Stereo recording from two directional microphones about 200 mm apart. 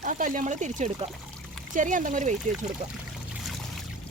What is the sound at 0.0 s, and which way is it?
Speech, 40° right (ahead or behind).